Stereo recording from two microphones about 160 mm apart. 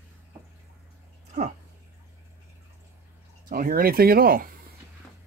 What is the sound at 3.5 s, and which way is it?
Speech, 65° right (ahead or behind).